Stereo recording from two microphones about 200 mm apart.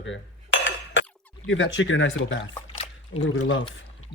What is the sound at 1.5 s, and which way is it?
Speech, 70° left (ahead or behind).